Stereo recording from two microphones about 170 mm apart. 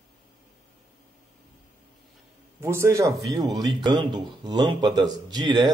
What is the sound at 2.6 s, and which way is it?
Speech, 15° right (ahead or behind).